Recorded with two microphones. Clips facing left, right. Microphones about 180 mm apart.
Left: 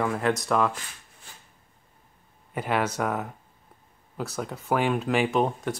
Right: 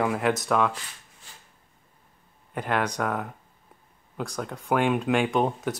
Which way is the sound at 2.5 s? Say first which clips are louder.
Even; 5° left (ahead or behind).